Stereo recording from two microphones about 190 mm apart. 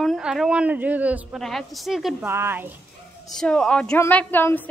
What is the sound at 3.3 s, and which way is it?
A woman's voice, 5° left (ahead or behind).